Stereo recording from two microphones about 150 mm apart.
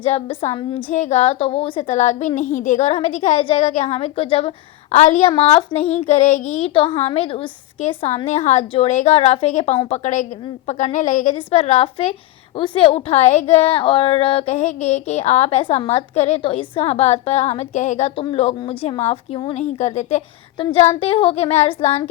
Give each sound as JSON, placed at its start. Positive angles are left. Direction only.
{"t": 0.0, "sound": "a woman's voice", "side_deg": 45}
{"t": 0.9, "sound": "a woman's voice", "side_deg": 50}
{"t": 1.9, "sound": "a woman's voice", "side_deg": 50}
{"t": 11.3, "sound": "a woman's voice", "side_deg": 45}
{"t": 18.2, "sound": "a woman's voice", "side_deg": 40}
{"t": 19.6, "sound": "a woman's voice", "side_deg": 50}
{"t": 20.6, "sound": "a woman's voice", "side_deg": 35}